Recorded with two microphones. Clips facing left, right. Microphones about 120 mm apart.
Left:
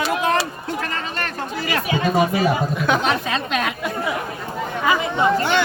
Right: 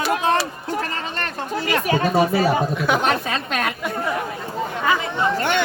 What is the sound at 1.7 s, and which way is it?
Speech, 35° right (ahead or behind).